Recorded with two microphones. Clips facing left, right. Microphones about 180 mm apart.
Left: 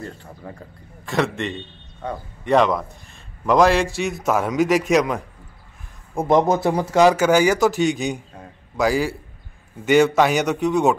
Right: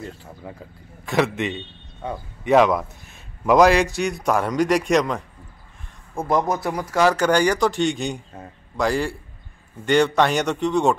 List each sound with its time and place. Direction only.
1.0 s a man's voice: centre (ahead or behind)
6.1 s speech: 20° left (ahead or behind)
7.2 s a man's voice: 5° left (ahead or behind)